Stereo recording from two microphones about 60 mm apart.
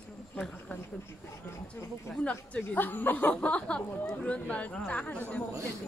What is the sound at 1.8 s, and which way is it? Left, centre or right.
Speech, left.